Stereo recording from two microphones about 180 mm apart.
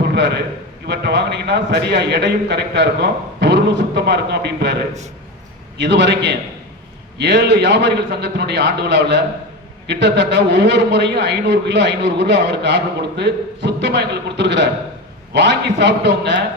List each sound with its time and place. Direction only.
0.1 s a man's voice: 65° right (ahead or behind)